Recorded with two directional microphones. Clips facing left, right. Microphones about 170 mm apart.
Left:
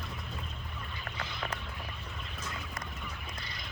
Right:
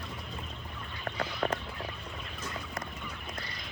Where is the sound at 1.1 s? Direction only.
40° right (ahead or behind).